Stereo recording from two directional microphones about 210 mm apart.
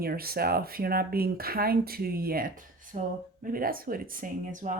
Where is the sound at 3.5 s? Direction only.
45° right (ahead or behind).